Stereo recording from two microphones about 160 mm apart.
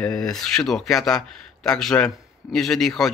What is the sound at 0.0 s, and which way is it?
Speech, 5° left (ahead or behind).